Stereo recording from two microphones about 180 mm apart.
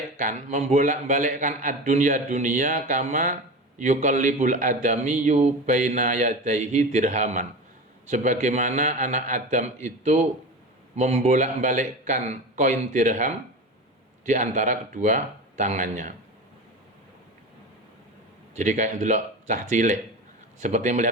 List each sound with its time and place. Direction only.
0.2 s a man's voice: 45° right (ahead or behind)
18.5 s a man's voice: 40° right (ahead or behind)